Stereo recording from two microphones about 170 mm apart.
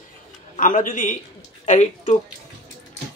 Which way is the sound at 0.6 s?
50° left (ahead or behind).